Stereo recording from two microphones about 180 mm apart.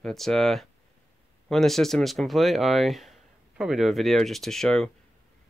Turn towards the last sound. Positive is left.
turn(degrees=0)  # may be behind; listen again after turning